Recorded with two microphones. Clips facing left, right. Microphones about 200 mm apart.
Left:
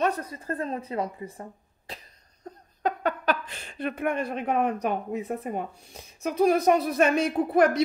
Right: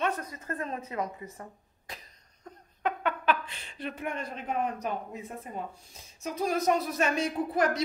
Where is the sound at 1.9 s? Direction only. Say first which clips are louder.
Left 3 dB; 35° left (ahead or behind).